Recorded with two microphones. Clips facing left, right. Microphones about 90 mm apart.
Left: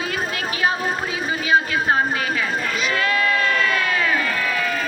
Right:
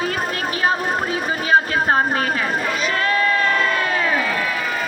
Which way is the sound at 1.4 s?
35° right (ahead or behind).